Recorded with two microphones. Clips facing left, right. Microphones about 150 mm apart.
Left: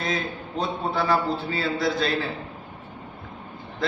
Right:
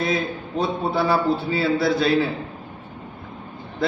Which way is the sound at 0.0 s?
5° right (ahead or behind).